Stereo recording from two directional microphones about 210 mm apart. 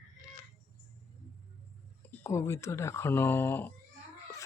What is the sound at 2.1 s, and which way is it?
Speech, 10° left (ahead or behind).